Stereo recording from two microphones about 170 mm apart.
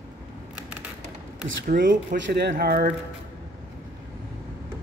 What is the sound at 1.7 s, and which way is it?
Speech, 55° right (ahead or behind).